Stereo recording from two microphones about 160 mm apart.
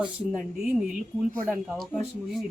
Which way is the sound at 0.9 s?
55° right (ahead or behind).